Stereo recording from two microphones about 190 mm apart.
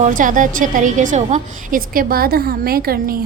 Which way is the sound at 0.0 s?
45° right (ahead or behind).